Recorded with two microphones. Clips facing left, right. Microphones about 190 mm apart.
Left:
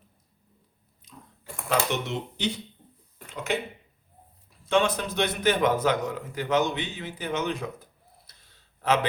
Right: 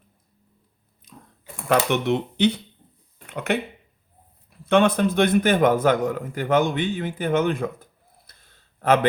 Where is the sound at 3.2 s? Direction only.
60° right (ahead or behind).